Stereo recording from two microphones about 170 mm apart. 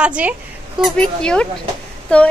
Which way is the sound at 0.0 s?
5° right (ahead or behind).